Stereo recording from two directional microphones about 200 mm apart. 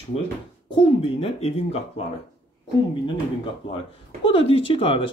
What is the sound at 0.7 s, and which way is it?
Speech, 30° left (ahead or behind).